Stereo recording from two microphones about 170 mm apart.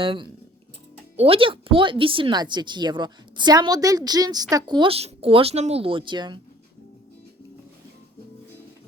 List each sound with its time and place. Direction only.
0.0 s speech: 30° right (ahead or behind)